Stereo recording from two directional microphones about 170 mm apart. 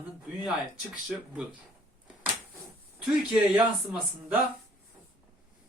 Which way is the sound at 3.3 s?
5° right (ahead or behind).